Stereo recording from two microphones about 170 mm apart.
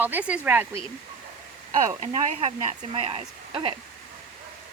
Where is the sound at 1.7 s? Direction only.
45° right (ahead or behind); by 3.7 s 30° right (ahead or behind).